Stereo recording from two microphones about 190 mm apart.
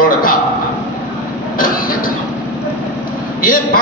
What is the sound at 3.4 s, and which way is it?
Speech, 50° left (ahead or behind).